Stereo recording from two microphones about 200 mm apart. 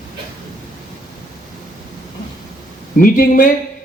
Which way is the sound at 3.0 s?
45° left (ahead or behind).